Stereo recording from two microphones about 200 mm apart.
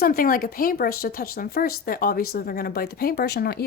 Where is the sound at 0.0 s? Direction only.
45° left (ahead or behind).